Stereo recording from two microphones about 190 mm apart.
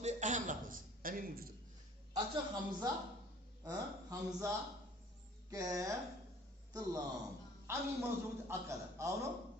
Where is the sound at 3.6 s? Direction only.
15° right (ahead or behind).